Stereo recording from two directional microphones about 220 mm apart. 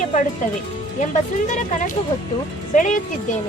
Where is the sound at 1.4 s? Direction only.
35° left (ahead or behind).